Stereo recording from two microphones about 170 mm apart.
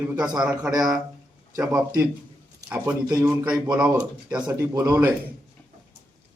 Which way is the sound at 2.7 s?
10° right (ahead or behind).